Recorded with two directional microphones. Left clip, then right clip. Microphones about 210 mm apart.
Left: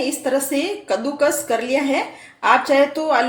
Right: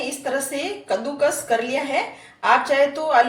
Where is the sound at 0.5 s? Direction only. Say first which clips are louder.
Left 3 dB; 50° left (ahead or behind).